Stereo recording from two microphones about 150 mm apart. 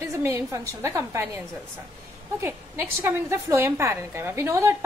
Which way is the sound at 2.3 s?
15° right (ahead or behind).